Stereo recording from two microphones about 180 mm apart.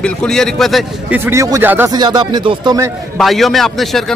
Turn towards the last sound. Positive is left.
turn(degrees=0)  # may be behind; listen again after turning